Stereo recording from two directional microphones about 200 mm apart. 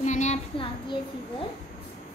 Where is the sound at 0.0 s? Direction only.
35° left (ahead or behind).